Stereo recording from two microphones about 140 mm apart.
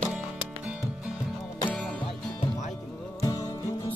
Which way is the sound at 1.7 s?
5° left (ahead or behind).